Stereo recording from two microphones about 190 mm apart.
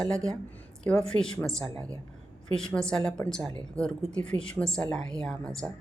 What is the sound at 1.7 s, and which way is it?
Speech, 20° right (ahead or behind).